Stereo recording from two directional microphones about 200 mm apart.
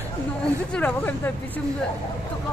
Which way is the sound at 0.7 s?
10° left (ahead or behind).